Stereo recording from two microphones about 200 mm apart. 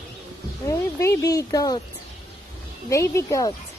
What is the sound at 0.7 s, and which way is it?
Speech, 15° left (ahead or behind).